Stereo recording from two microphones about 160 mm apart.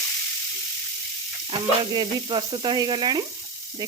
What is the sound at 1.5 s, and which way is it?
Speech, 30° right (ahead or behind).